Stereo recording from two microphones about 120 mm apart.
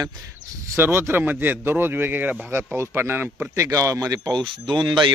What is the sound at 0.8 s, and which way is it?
A man's voice, 20° right (ahead or behind).